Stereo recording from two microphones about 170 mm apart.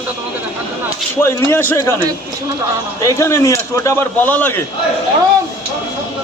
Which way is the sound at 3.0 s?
20° left (ahead or behind).